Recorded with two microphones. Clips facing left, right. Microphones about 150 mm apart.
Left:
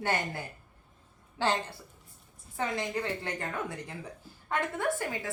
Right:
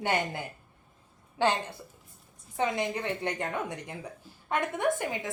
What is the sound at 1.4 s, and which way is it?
A woman's voice, 15° right (ahead or behind).